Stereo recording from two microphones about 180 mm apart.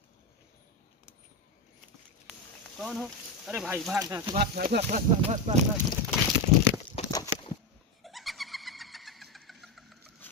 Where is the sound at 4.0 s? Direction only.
20° right (ahead or behind).